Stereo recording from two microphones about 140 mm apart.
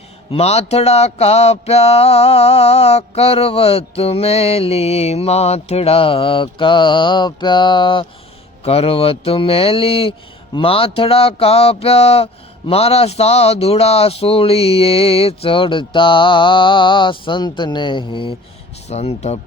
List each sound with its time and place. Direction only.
0.3 s speech: 45° left (ahead or behind)
18.9 s speech: 50° left (ahead or behind)